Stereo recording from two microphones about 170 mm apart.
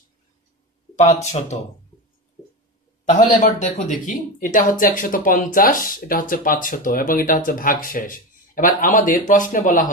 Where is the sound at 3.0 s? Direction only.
50° left (ahead or behind).